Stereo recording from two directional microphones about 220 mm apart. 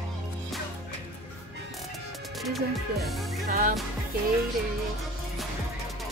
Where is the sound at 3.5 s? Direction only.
35° right (ahead or behind).